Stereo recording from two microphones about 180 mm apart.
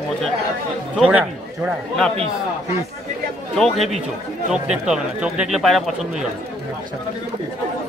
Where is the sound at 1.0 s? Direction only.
5° right (ahead or behind).